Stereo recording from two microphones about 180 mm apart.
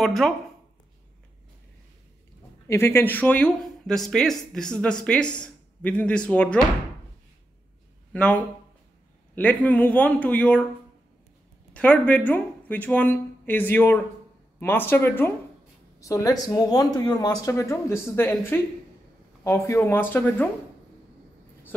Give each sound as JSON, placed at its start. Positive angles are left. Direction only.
{"t": 0.0, "sound": "speech", "side_deg": 0}
{"t": 2.7, "sound": "speech", "side_deg": 15}
{"t": 8.1, "sound": "a man's voice", "side_deg": 5}
{"t": 11.7, "sound": "a man's voice", "side_deg": 5}